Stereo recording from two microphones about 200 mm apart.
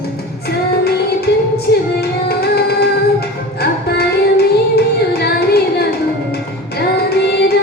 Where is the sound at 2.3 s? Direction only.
55° left (ahead or behind).